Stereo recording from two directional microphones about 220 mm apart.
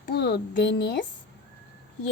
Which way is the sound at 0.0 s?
45° left (ahead or behind).